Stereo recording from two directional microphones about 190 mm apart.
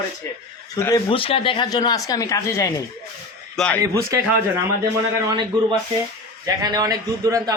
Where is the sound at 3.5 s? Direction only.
5° left (ahead or behind).